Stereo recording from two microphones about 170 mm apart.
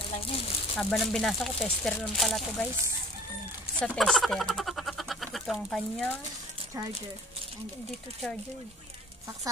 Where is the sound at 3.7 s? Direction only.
Centre (ahead or behind).